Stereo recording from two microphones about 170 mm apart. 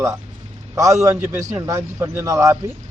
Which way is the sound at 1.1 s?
10° right (ahead or behind).